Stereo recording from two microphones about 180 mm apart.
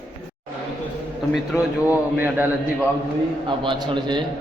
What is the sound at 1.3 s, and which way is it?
A man's voice, 5° right (ahead or behind).